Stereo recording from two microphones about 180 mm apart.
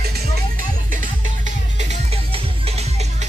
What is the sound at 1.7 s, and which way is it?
Music, 35° right (ahead or behind).